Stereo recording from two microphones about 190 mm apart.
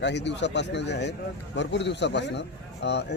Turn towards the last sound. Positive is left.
turn(degrees=65)  # may be behind; listen again after turning